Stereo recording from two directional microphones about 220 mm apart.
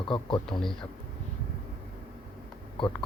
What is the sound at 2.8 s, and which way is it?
Speech, 20° left (ahead or behind).